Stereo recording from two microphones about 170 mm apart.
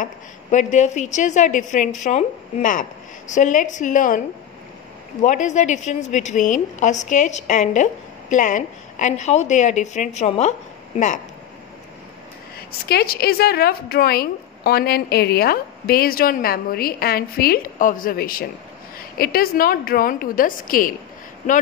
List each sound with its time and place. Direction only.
0.0 s a woman's voice: 45° left (ahead or behind)
5.2 s a woman's voice: 45° left (ahead or behind)
12.8 s speech: 65° left (ahead or behind)